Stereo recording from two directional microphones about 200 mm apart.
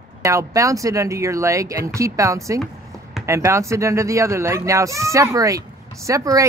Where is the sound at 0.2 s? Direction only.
15° right (ahead or behind).